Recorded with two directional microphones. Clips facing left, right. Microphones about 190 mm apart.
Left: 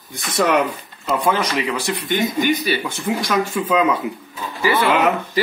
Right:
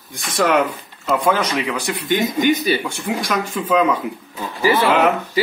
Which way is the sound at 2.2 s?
20° right (ahead or behind).